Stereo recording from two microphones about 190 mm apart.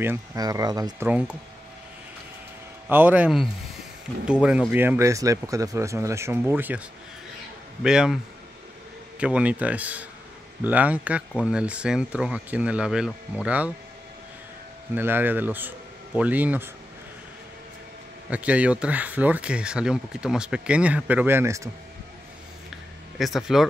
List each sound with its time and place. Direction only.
0.0 s speech: 15° right (ahead or behind)
1.0 s speech: 5° right (ahead or behind)
2.9 s speech: 10° right (ahead or behind)
7.8 s speech: 5° right (ahead or behind)
9.2 s speech: 5° right (ahead or behind)
15.0 s speech: 10° right (ahead or behind)
18.3 s speech: 5° right (ahead or behind)
23.1 s speech: centre (ahead or behind)